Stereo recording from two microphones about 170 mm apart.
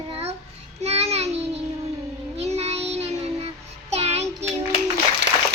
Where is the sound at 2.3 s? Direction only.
40° right (ahead or behind).